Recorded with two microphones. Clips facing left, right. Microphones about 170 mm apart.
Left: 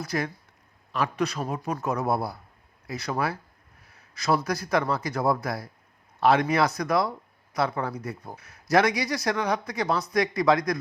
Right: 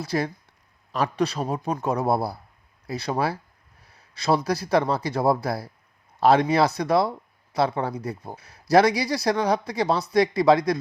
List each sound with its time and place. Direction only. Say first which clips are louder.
0.0 s speech: right 3 dB; 30° right (ahead or behind)
3.8 s a sound: right 3 dB; 30° right (ahead or behind)
4.4 s speech: right 4 dB; 30° right (ahead or behind)